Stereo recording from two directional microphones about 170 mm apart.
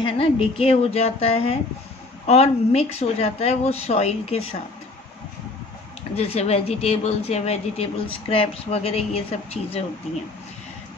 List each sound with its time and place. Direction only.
0.0 s a woman's voice: 35° left (ahead or behind)
6.1 s a woman's voice: 40° left (ahead or behind)